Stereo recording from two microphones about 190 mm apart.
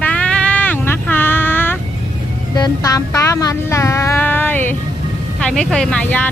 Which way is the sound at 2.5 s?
20° left (ahead or behind).